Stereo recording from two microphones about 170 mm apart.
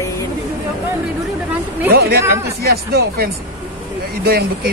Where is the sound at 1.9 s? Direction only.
65° right (ahead or behind).